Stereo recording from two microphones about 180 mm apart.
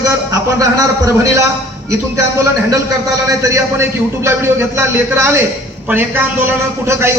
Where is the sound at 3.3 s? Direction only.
15° right (ahead or behind).